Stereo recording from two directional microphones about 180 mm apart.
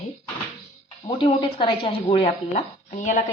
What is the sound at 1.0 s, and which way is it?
A woman's voice, 25° left (ahead or behind).